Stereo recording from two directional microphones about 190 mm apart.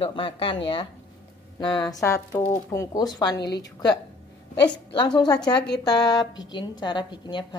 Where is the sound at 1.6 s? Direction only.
25° left (ahead or behind).